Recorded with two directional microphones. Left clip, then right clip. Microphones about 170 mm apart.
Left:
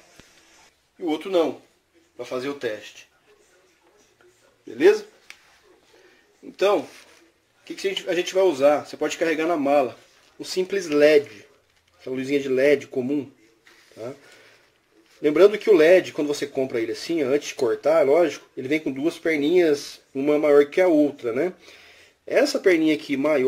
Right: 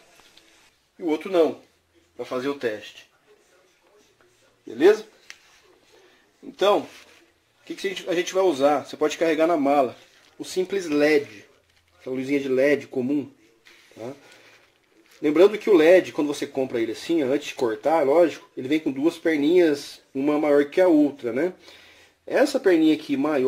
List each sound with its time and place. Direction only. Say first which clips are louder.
0.9 s speech: even; 30° right (ahead or behind)
7.6 s speech: left 2 dB; 40° right (ahead or behind)
15.2 s speech: left 2 dB; 25° right (ahead or behind)